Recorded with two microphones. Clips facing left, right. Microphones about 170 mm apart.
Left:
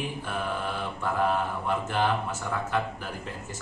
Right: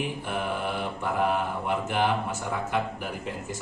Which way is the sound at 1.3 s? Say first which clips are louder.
Even; 15° right (ahead or behind).